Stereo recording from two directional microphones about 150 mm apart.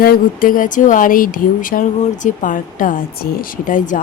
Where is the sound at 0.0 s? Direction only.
75° left (ahead or behind).